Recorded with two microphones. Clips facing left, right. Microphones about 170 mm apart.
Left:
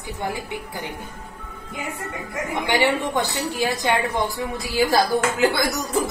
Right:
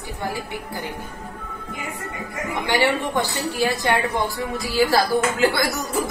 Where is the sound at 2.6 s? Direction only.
20° left (ahead or behind).